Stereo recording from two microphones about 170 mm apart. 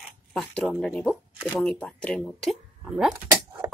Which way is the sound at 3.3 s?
20° right (ahead or behind).